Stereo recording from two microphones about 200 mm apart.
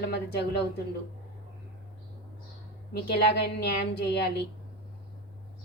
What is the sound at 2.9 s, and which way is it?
Speech, 55° left (ahead or behind).